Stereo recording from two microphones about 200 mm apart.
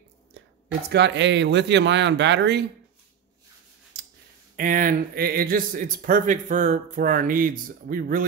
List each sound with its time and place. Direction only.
0.8 s speech: 60° right (ahead or behind)
3.9 s a sound: 60° right (ahead or behind)
4.6 s speech: 45° right (ahead or behind)